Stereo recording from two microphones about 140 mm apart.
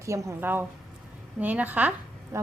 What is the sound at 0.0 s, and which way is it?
Speech, 20° right (ahead or behind).